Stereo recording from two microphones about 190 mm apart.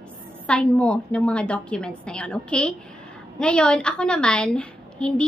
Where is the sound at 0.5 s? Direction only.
5° left (ahead or behind).